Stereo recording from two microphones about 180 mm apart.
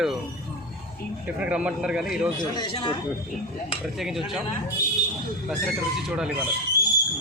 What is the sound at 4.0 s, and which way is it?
Speech, centre (ahead or behind).